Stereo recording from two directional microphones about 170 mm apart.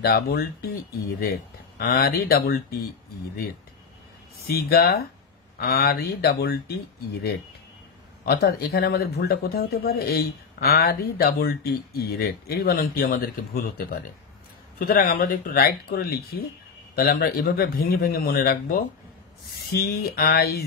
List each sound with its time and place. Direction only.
0.0 s speech: 65° left (ahead or behind)
4.6 s speech: 65° left (ahead or behind)
8.3 s speech: 65° left (ahead or behind)